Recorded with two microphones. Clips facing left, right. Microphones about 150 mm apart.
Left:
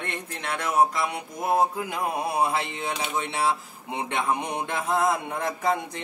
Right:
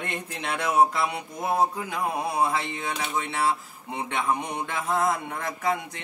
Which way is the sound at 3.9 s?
20° left (ahead or behind).